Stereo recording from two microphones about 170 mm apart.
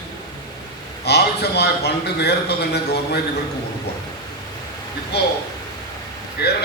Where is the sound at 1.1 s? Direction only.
75° left (ahead or behind).